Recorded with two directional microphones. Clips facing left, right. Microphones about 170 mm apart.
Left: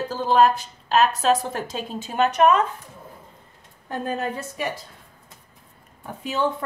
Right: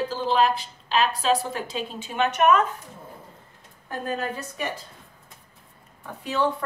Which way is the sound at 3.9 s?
25° left (ahead or behind).